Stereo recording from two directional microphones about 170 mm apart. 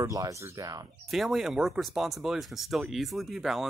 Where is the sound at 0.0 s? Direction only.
20° right (ahead or behind).